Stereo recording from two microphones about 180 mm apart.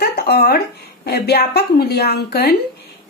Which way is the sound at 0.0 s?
60° left (ahead or behind).